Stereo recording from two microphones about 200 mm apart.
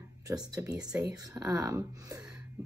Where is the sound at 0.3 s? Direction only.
15° right (ahead or behind).